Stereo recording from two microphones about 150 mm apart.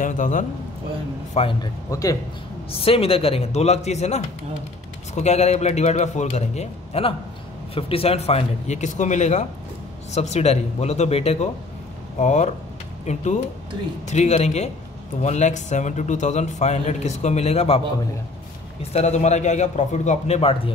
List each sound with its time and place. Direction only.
0.0 s a man's voice: 55° left (ahead or behind)
1.6 s speech: 25° left (ahead or behind)
2.7 s a man's voice: 40° left (ahead or behind)